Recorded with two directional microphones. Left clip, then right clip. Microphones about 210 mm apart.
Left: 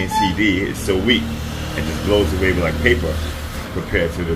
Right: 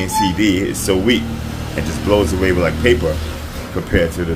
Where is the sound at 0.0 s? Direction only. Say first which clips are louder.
Right 1 dB; 25° right (ahead or behind).